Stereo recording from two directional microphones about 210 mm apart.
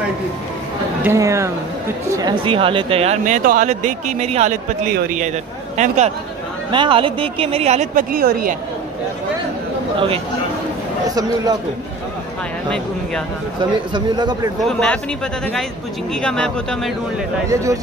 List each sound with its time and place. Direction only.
1.0 s speech: 15° right (ahead or behind); by 8.5 s 45° right (ahead or behind)
9.9 s speech: 25° right (ahead or behind)
13.9 s speech: 20° right (ahead or behind)
14.6 s speech: 5° left (ahead or behind)
16.2 s speech: 5° left (ahead or behind)
17.5 s speech: 15° right (ahead or behind)